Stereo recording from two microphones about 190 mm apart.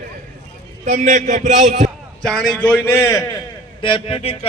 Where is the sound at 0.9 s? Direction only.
40° right (ahead or behind).